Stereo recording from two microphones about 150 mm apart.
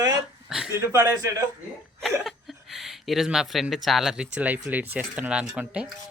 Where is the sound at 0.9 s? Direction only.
20° right (ahead or behind).